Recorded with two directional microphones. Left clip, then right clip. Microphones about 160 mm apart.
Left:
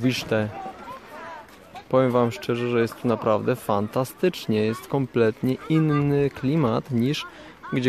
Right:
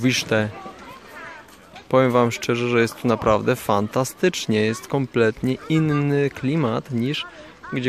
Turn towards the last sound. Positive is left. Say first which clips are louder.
# even
turn(degrees=15)  # may be behind; listen again after turning